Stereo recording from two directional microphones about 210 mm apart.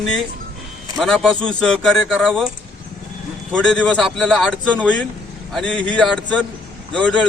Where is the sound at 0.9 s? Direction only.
Centre (ahead or behind).